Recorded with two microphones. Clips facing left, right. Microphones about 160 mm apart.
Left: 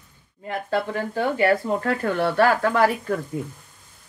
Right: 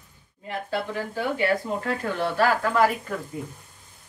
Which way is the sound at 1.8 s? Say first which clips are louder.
Left 4 dB; 60° left (ahead or behind).